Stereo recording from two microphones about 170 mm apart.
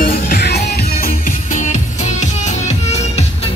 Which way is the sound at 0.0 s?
75° left (ahead or behind).